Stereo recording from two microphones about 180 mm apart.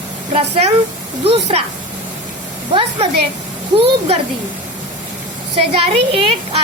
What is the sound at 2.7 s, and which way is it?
Speech, 30° right (ahead or behind).